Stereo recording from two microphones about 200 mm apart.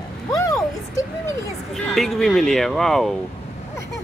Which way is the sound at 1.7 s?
Centre (ahead or behind).